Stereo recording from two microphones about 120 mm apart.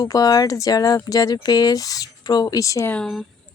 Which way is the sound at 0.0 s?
30° left (ahead or behind).